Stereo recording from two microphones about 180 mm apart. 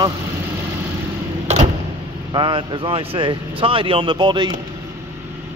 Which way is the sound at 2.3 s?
25° right (ahead or behind).